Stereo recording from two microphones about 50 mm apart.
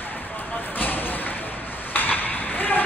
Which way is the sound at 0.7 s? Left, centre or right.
Left.